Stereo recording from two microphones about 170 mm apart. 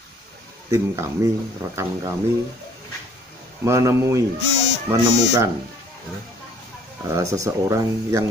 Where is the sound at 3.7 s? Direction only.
15° right (ahead or behind).